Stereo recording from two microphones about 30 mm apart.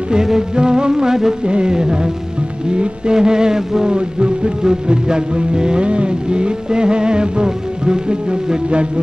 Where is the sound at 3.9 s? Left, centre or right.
Right.